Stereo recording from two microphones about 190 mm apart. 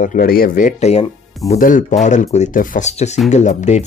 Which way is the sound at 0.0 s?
45° left (ahead or behind).